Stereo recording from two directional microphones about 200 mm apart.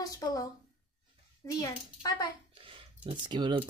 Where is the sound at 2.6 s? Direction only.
30° right (ahead or behind).